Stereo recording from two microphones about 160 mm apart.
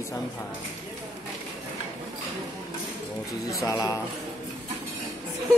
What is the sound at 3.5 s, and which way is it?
Speech, 20° left (ahead or behind).